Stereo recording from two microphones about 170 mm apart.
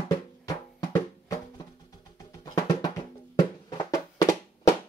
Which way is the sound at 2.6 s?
20° left (ahead or behind).